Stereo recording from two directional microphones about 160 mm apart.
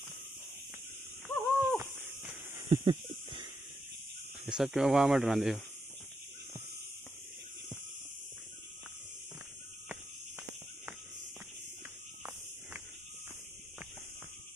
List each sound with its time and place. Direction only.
1.3 s owl: 15° left (ahead or behind)
1.8 s a sound: 20° right (ahead or behind)
4.5 s speech: 5° right (ahead or behind)